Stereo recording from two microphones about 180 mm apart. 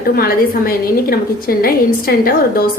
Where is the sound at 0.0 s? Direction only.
55° left (ahead or behind).